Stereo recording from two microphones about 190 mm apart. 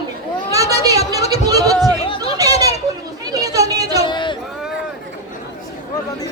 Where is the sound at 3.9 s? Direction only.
25° left (ahead or behind).